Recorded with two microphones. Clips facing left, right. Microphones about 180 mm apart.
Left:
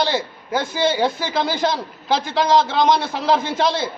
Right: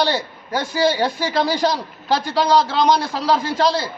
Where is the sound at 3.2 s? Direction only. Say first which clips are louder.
Even; 25° left (ahead or behind).